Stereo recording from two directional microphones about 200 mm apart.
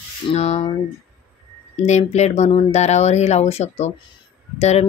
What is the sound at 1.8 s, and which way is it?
Speech, 35° left (ahead or behind).